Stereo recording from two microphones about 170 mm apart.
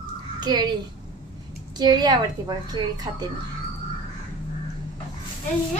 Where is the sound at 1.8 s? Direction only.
25° right (ahead or behind).